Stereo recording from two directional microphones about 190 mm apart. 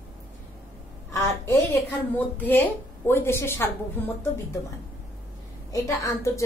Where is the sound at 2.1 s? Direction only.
10° left (ahead or behind).